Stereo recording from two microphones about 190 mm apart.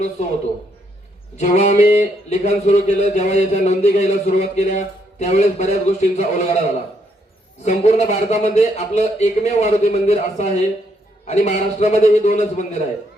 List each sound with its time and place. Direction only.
1.4 s speech: 35° left (ahead or behind)
7.6 s speech: 35° left (ahead or behind)